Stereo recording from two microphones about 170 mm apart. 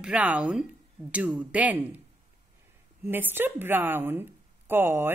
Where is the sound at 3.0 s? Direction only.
10° right (ahead or behind).